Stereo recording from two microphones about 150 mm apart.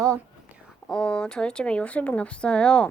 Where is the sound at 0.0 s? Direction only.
20° right (ahead or behind).